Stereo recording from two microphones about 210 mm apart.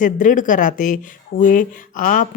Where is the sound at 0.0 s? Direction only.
40° left (ahead or behind).